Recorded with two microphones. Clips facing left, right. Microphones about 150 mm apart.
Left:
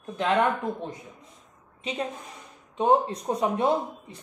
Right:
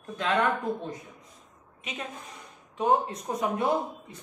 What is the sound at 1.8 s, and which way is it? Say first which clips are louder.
A woman's voice: left 7 dB; 30° left (ahead or behind).